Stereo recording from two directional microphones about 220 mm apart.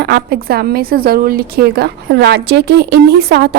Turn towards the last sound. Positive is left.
turn(degrees=-50)  # may be behind; listen again after turning